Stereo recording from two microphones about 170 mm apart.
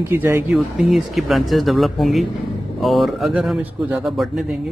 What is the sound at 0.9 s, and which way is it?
Speech, centre (ahead or behind).